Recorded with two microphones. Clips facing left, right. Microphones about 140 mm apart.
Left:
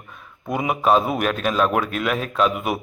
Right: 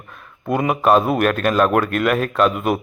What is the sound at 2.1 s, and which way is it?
Speech, 55° right (ahead or behind).